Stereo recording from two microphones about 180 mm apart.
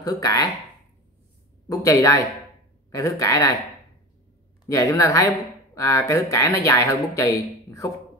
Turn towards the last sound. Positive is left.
turn(degrees=15)  # may be behind; listen again after turning